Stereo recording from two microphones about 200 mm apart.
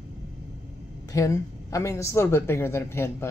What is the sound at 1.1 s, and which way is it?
A woman's voice, 15° left (ahead or behind).